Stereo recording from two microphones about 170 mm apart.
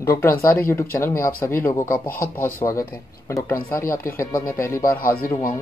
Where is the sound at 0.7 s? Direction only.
15° left (ahead or behind).